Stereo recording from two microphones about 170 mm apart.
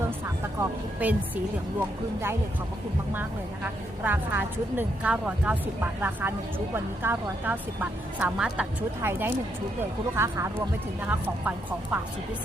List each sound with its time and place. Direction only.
0.6 s a woman's voice: 10° right (ahead or behind)
3.2 s a woman's voice: 10° right (ahead or behind)